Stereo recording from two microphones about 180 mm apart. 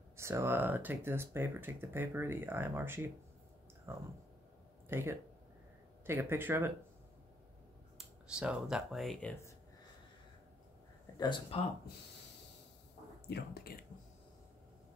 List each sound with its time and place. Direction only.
0.2 s speech: 15° right (ahead or behind)
8.0 s speech: 5° right (ahead or behind)
11.1 s speech: 25° left (ahead or behind)
13.3 s speech: 55° left (ahead or behind)